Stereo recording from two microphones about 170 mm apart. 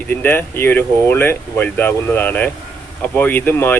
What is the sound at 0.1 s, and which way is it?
Speech, 10° left (ahead or behind).